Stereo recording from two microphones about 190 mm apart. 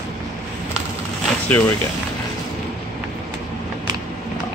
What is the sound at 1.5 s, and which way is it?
Speech, 10° left (ahead or behind).